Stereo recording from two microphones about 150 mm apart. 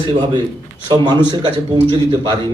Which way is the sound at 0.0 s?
35° right (ahead or behind).